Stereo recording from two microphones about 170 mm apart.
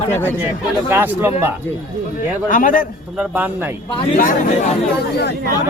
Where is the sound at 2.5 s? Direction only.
50° left (ahead or behind).